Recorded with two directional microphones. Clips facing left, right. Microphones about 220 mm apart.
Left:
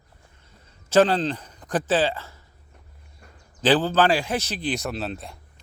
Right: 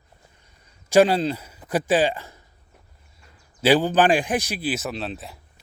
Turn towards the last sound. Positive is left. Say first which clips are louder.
# even
turn(degrees=0)  # may be behind; listen again after turning